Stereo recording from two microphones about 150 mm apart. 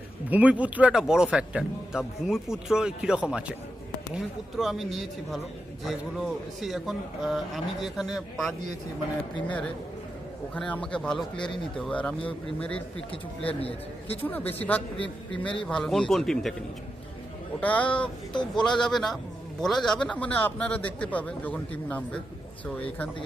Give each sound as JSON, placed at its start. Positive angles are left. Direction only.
{"t": 0.3, "sound": "speech", "side_deg": -10}
{"t": 10.5, "sound": "a man's voice", "side_deg": 5}
{"t": 13.6, "sound": "speech", "side_deg": 40}
{"t": 14.3, "sound": "a man's voice", "side_deg": 10}
{"t": 17.6, "sound": "a man's voice", "side_deg": 10}